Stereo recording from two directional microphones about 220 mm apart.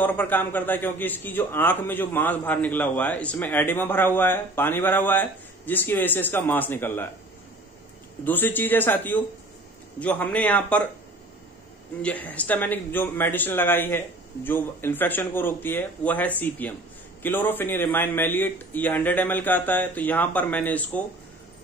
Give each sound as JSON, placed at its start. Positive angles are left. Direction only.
{"t": 0.0, "sound": "a man's voice", "side_deg": 10}
{"t": 8.2, "sound": "a man's voice", "side_deg": 10}
{"t": 12.0, "sound": "a man's voice", "side_deg": 5}